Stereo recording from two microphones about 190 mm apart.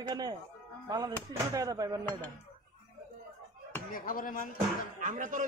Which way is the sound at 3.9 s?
50° left (ahead or behind).